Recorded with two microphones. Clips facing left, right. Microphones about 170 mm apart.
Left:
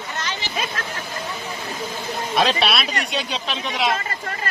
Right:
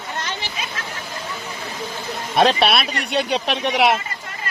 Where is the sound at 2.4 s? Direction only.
55° right (ahead or behind); by 3.9 s 70° right (ahead or behind).